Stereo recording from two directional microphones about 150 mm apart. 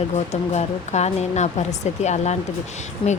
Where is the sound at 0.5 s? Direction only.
50° left (ahead or behind).